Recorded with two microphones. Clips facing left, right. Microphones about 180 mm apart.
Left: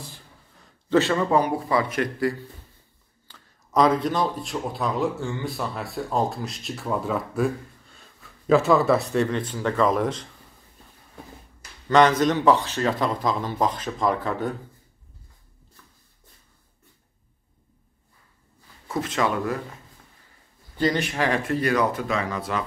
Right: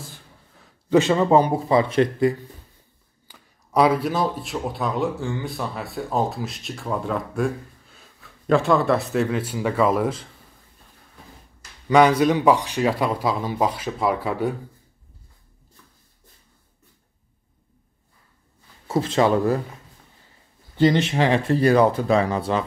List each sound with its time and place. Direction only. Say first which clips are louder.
0.8 s speech: right 3 dB; 20° right (ahead or behind)
3.3 s speech: right 2 dB; 10° right (ahead or behind)
11.9 s speech: right 2 dB; 10° right (ahead or behind)
18.9 s speech: right 6 dB; 30° right (ahead or behind)
20.7 s speech: right 5 dB; 25° right (ahead or behind)